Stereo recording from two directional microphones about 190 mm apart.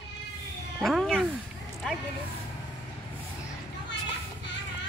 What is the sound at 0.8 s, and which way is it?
Cat, centre (ahead or behind).